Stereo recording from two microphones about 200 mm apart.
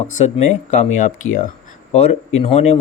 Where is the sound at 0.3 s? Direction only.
35° left (ahead or behind).